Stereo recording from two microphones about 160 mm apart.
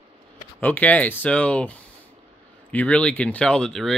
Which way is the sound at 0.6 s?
10° left (ahead or behind).